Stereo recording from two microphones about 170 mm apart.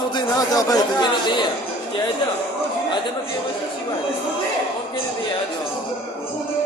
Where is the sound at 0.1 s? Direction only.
20° left (ahead or behind).